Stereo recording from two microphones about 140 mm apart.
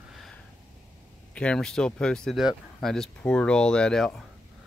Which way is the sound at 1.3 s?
5° left (ahead or behind).